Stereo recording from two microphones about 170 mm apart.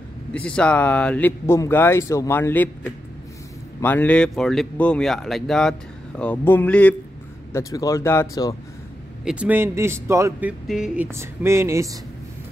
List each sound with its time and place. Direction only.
0.3 s speech: 5° left (ahead or behind)
7.5 s speech: 20° left (ahead or behind)
9.2 s a man's voice: 5° right (ahead or behind)
10.7 s speech: 5° right (ahead or behind)
11.1 s a man's voice: 15° right (ahead or behind)